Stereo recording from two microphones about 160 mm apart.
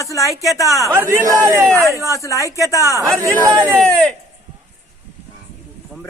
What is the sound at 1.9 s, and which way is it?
Speech, 20° left (ahead or behind).